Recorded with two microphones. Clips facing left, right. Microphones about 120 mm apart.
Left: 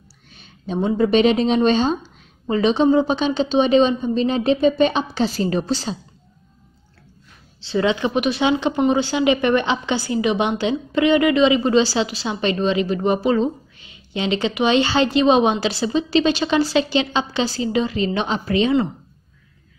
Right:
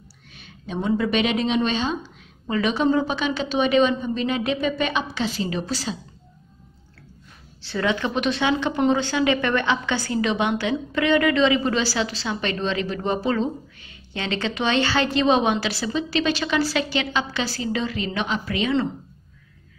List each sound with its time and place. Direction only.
0.7 s a woman's voice: 30° left (ahead or behind)
2.5 s a woman's voice: 25° left (ahead or behind)
5.7 s a woman's voice: 25° left (ahead or behind)
7.6 s a woman's voice: 20° left (ahead or behind)